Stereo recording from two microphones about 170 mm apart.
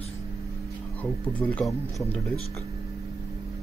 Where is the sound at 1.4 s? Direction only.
5° left (ahead or behind).